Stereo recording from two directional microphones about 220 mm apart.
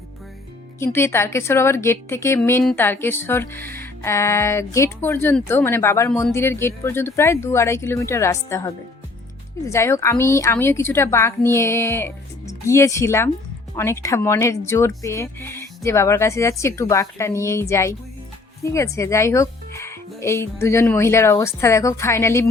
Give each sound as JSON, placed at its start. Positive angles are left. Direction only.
{"t": 0.8, "sound": "speech", "side_deg": 10}